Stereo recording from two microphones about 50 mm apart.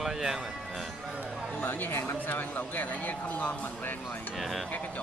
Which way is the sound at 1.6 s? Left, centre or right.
Left.